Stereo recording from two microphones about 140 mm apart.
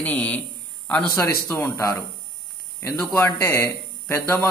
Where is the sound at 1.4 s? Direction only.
20° left (ahead or behind).